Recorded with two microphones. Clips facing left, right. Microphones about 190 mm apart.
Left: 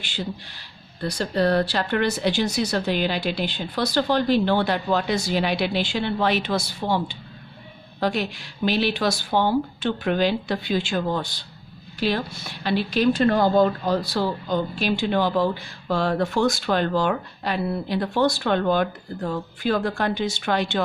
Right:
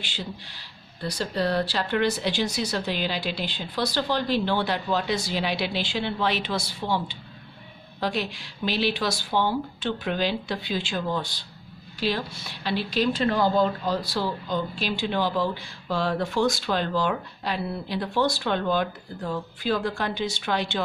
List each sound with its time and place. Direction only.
0.0 s speech: 50° left (ahead or behind)